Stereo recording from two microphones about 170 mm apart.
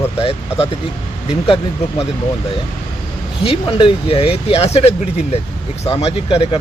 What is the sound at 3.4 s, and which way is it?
Speech, 35° left (ahead or behind).